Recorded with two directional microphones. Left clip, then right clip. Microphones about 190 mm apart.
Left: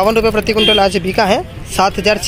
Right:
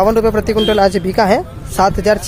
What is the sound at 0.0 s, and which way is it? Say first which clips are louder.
Speech: even; 15° right (ahead or behind).